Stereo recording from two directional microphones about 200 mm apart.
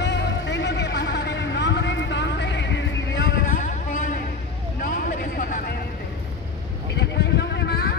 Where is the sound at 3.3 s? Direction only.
40° left (ahead or behind).